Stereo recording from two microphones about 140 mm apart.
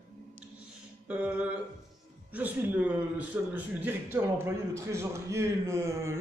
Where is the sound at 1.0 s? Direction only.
10° right (ahead or behind).